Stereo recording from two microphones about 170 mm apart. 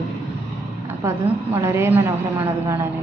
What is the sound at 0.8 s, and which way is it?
A woman's voice, 15° right (ahead or behind).